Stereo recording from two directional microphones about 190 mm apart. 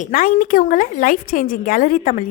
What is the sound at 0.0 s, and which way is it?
A woman's voice, 45° left (ahead or behind).